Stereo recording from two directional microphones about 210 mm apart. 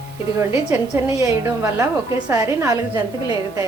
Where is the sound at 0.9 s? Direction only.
15° right (ahead or behind).